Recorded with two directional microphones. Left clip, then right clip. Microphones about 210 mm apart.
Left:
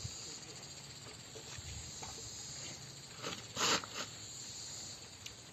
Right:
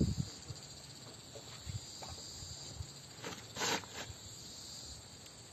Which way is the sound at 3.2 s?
15° left (ahead or behind).